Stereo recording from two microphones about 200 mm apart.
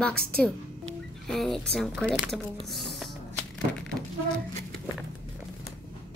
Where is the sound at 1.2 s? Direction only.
Centre (ahead or behind).